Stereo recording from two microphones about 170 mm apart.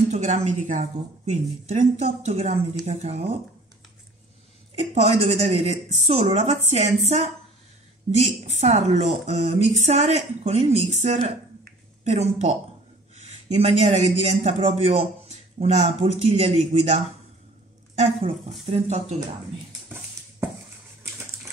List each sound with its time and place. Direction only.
0.1 s a woman's voice: 45° right (ahead or behind)
4.7 s a woman's voice: 35° right (ahead or behind)